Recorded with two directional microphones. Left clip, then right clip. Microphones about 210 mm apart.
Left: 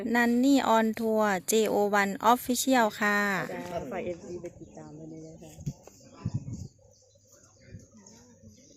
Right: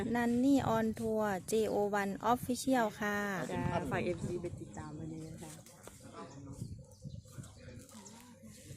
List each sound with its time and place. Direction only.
0.1 s speech: 20° left (ahead or behind)
3.8 s speech: 10° right (ahead or behind)